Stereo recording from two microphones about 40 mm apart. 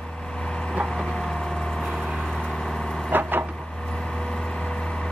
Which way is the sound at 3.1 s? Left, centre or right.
Right.